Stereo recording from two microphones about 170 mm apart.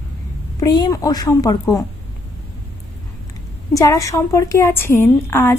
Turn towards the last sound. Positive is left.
turn(degrees=15)  # may be behind; listen again after turning